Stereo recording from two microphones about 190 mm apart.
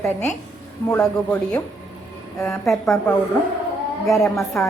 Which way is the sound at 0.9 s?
10° left (ahead or behind).